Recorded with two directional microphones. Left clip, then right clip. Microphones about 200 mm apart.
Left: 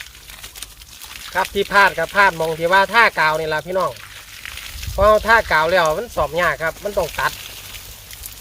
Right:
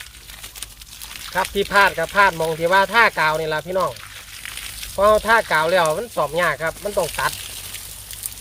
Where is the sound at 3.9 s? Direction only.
25° right (ahead or behind).